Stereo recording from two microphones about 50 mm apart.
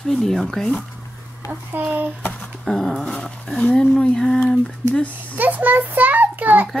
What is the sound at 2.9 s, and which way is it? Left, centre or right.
Speech, centre.